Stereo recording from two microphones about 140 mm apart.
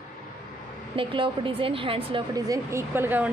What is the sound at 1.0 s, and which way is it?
A woman's voice, 40° right (ahead or behind).